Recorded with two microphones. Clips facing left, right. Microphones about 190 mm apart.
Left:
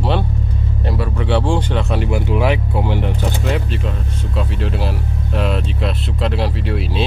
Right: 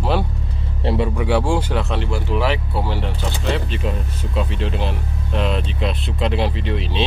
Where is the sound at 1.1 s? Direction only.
10° right (ahead or behind).